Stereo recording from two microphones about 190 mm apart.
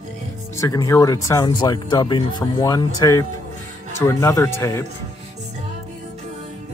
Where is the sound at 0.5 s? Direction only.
15° left (ahead or behind).